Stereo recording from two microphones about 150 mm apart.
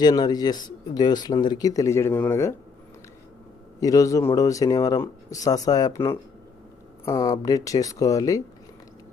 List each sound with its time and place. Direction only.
0.0 s speech: 25° left (ahead or behind)
3.8 s speech: 25° left (ahead or behind)